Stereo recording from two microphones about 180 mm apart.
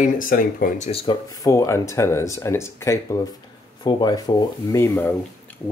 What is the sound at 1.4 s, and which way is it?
Speech, 15° left (ahead or behind).